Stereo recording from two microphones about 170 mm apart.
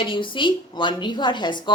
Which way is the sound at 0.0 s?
30° left (ahead or behind).